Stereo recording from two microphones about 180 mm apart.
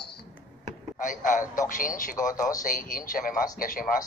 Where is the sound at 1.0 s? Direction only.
45° left (ahead or behind).